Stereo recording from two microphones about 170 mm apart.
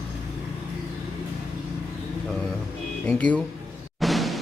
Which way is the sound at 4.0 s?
Centre (ahead or behind).